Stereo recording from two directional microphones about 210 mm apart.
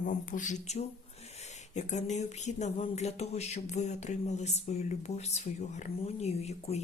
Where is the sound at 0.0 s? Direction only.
40° left (ahead or behind).